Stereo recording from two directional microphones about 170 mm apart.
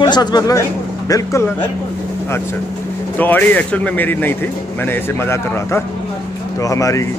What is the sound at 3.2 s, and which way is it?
Speech, 10° left (ahead or behind).